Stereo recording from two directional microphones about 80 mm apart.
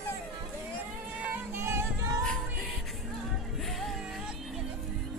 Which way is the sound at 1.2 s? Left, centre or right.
Right.